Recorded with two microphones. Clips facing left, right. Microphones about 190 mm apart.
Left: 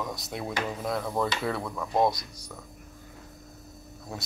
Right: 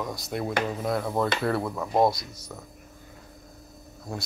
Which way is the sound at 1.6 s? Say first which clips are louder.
Right 3 dB; 20° right (ahead or behind).